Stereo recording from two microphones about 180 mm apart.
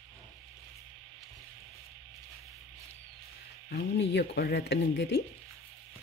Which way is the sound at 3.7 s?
70° left (ahead or behind).